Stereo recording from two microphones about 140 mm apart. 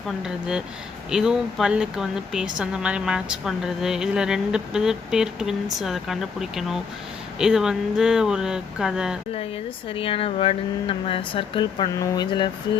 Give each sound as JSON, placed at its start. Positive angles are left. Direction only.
{"t": 0.2, "sound": "a woman's voice", "side_deg": -5}
{"t": 9.9, "sound": "speech", "side_deg": 40}